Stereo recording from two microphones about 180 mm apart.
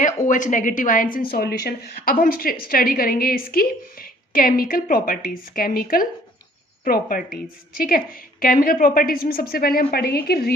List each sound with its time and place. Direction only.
0.0 s a woman's voice: 45° left (ahead or behind)